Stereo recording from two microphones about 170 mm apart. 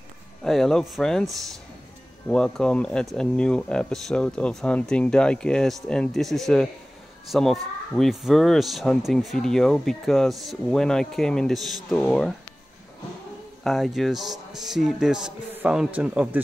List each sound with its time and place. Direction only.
0.4 s speech: centre (ahead or behind)
13.7 s speech: centre (ahead or behind)